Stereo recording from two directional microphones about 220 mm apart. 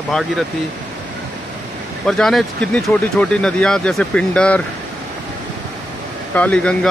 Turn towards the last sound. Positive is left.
turn(degrees=5)  # may be behind; listen again after turning